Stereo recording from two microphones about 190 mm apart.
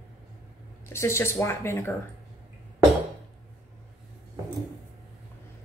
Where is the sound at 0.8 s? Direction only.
15° left (ahead or behind).